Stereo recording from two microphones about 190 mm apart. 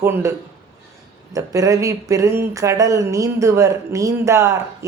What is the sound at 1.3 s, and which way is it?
Speech, 15° right (ahead or behind).